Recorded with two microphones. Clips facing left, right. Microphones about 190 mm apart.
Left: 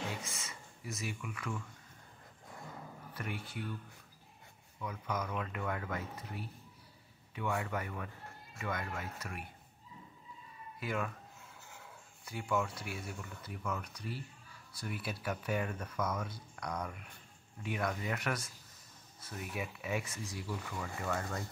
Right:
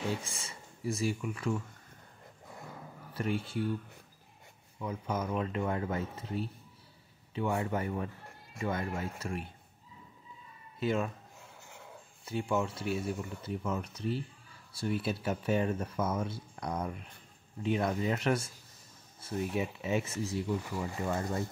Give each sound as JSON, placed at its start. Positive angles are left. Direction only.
{"t": 0.2, "sound": "speech", "side_deg": -30}
{"t": 3.1, "sound": "speech", "side_deg": -30}
{"t": 4.7, "sound": "speech", "side_deg": -25}
{"t": 10.8, "sound": "speech", "side_deg": -25}
{"t": 12.3, "sound": "speech", "side_deg": -25}